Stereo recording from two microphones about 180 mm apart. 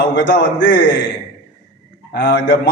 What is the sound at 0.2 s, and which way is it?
Speech, 75° left (ahead or behind).